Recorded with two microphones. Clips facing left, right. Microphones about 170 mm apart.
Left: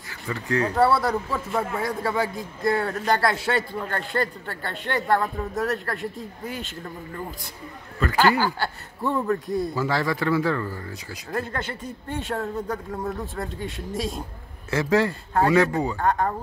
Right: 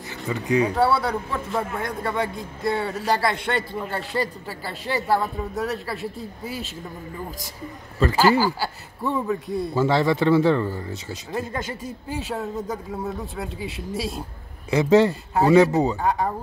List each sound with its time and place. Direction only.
0.1 s speech: 15° right (ahead or behind)
0.7 s a man's voice: centre (ahead or behind)
8.2 s a man's voice: 10° right (ahead or behind)
9.8 s speech: 25° right (ahead or behind)
11.3 s a man's voice: 10° right (ahead or behind)
14.7 s speech: 20° right (ahead or behind)
16.0 s a man's voice: 10° right (ahead or behind)